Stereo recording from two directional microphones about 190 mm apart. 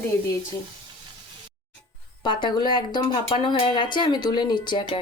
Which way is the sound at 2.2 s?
25° left (ahead or behind).